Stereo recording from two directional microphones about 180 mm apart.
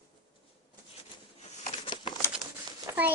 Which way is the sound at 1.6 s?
30° left (ahead or behind).